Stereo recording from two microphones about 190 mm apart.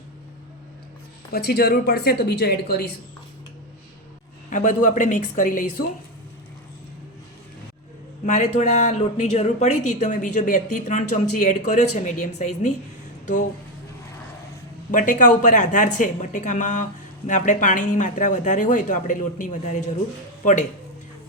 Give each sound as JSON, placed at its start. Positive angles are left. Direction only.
{"t": 1.3, "sound": "speech", "side_deg": 55}
{"t": 4.4, "sound": "speech", "side_deg": 40}
{"t": 8.3, "sound": "speech", "side_deg": 40}
{"t": 14.9, "sound": "speech", "side_deg": 45}